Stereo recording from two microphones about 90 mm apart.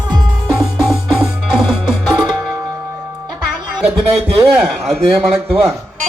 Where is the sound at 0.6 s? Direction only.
5° right (ahead or behind).